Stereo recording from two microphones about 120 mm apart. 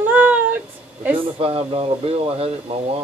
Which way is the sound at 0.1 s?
15° right (ahead or behind).